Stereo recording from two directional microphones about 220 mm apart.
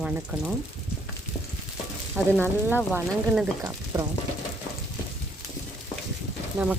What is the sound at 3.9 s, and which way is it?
Speech, 15° right (ahead or behind).